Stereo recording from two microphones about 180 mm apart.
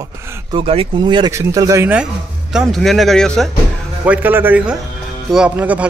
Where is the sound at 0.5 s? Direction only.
30° right (ahead or behind); by 3.5 s 5° left (ahead or behind).